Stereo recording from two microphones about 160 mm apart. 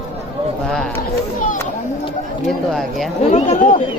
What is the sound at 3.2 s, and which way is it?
Speech, 40° left (ahead or behind).